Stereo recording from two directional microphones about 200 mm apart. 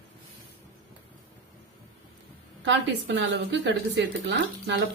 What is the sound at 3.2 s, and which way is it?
A woman's voice, 60° right (ahead or behind).